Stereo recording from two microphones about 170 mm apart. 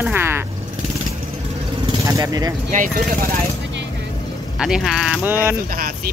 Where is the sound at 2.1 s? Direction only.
20° right (ahead or behind).